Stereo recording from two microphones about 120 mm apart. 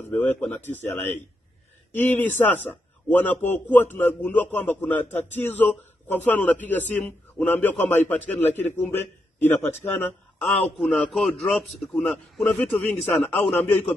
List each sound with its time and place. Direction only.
0.1 s a man's voice: 15° left (ahead or behind)
10.8 s a man's voice: 5° left (ahead or behind)
11.9 s a man's voice: 15° left (ahead or behind)